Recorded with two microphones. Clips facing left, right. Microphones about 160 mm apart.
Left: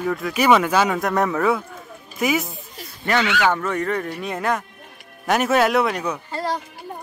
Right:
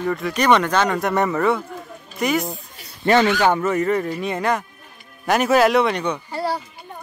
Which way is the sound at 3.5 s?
5° right (ahead or behind).